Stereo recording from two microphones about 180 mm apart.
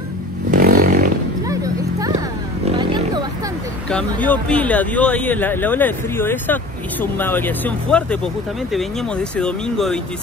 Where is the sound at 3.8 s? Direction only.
5° left (ahead or behind).